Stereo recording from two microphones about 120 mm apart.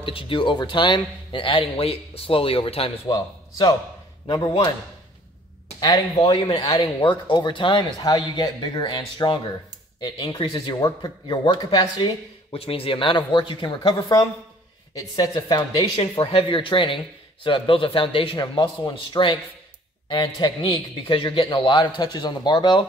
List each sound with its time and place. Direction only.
0.0 s speech: 45° left (ahead or behind)
3.1 s speech: 35° left (ahead or behind)
6.1 s speech: 50° left (ahead or behind)
6.6 s speech: 35° left (ahead or behind)
12.5 s speech: 50° left (ahead or behind)
15.0 s speech: 30° left (ahead or behind)
16.0 s speech: 50° left (ahead or behind)